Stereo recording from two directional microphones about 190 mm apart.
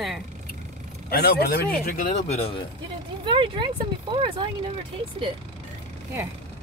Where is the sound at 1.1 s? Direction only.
55° left (ahead or behind); by 2.6 s 30° left (ahead or behind).